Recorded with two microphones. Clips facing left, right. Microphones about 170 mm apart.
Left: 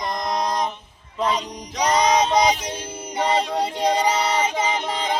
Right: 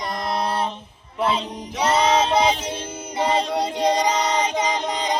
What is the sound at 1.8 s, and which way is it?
Music, 15° left (ahead or behind).